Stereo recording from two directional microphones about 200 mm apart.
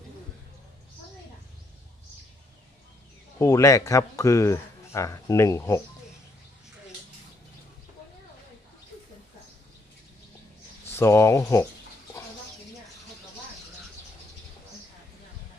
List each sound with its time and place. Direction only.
3.3 s speech: 15° left (ahead or behind)
10.9 s speech: 15° left (ahead or behind)